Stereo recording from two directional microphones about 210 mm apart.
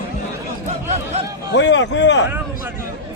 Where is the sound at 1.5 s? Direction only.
60° left (ahead or behind).